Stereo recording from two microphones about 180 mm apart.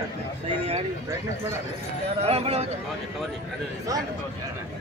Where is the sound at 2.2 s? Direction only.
35° right (ahead or behind).